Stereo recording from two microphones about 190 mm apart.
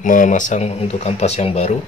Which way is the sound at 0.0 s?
45° left (ahead or behind).